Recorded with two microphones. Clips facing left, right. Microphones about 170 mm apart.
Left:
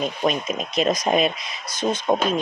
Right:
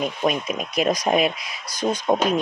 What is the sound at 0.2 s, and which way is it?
Speech, 10° right (ahead or behind).